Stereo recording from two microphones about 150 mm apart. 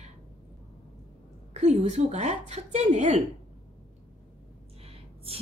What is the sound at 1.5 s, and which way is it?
A woman's voice, 50° right (ahead or behind).